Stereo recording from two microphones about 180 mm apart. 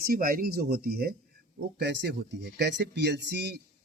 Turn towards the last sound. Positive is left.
turn(degrees=-70)  # may be behind; listen again after turning